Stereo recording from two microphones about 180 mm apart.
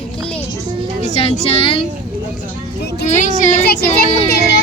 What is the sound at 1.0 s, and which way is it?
Speech, 35° left (ahead or behind).